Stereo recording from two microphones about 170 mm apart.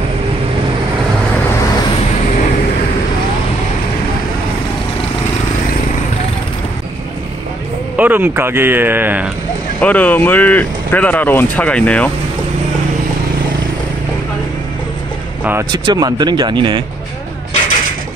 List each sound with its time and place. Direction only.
7.9 s speech: 10° right (ahead or behind)
9.8 s speech: 10° left (ahead or behind)
15.7 s speech: 25° right (ahead or behind)